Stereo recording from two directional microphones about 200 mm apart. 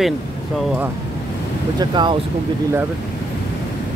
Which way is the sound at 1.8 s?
25° right (ahead or behind).